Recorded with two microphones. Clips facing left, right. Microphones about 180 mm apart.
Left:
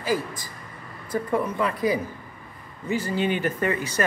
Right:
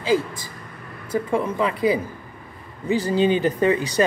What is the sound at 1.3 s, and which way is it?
Speech, 20° right (ahead or behind).